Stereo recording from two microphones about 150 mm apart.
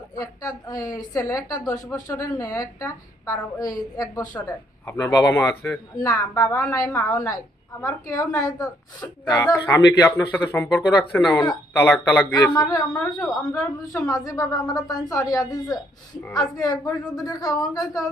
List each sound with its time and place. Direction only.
0.2 s a woman's voice: 25° left (ahead or behind)
12.3 s a woman's voice: 25° left (ahead or behind)